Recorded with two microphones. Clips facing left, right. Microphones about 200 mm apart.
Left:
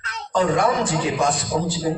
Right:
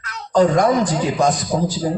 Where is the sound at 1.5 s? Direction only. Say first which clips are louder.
Right 3 dB; 40° right (ahead or behind).